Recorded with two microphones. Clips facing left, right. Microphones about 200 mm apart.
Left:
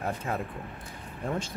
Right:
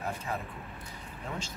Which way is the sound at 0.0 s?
55° left (ahead or behind).